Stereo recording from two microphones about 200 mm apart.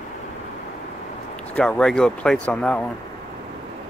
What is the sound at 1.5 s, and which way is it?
Speech, 5° left (ahead or behind).